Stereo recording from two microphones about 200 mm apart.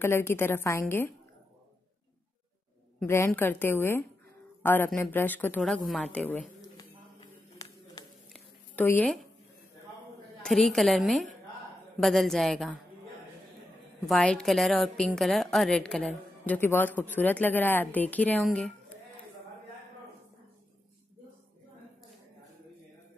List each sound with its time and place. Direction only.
0.0 s speech: 10° left (ahead or behind)
3.0 s speech: 10° left (ahead or behind)
6.6 s a sound: 20° left (ahead or behind)
8.3 s a sound: 10° left (ahead or behind)
10.4 s a woman's voice: centre (ahead or behind)
14.0 s a woman's voice: 5° left (ahead or behind)